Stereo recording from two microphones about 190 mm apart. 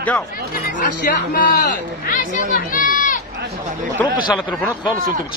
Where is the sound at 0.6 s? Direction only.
55° left (ahead or behind).